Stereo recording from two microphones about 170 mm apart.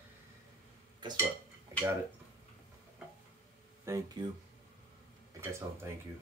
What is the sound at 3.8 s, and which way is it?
Speech, 15° right (ahead or behind).